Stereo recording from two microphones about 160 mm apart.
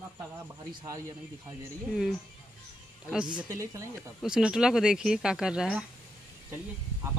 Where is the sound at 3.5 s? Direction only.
20° right (ahead or behind).